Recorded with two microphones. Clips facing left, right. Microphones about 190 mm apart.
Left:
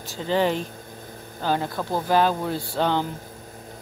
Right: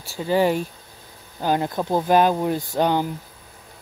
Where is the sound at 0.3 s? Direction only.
10° right (ahead or behind).